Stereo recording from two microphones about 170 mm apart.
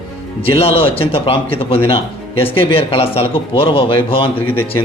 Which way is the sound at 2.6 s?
35° left (ahead or behind).